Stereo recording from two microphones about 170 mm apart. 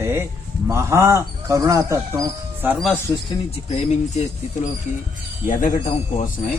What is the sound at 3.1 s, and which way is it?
Speech, 35° left (ahead or behind).